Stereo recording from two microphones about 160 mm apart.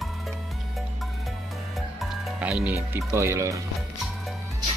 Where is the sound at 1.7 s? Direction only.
Centre (ahead or behind).